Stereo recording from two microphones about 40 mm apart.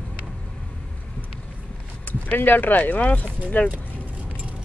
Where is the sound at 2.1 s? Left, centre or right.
Left.